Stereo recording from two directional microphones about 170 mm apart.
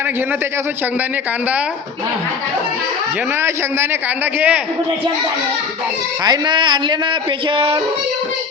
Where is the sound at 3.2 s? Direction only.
15° right (ahead or behind).